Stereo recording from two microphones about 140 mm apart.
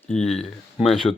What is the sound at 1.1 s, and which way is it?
Speech, 20° left (ahead or behind).